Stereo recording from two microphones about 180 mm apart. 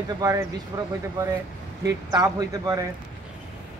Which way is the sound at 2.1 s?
20° right (ahead or behind).